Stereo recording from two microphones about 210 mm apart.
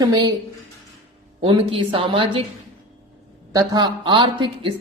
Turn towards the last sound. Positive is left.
turn(degrees=-25)  # may be behind; listen again after turning